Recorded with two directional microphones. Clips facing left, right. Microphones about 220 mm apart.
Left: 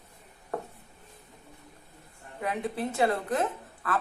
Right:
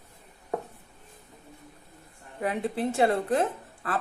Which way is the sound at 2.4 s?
30° right (ahead or behind).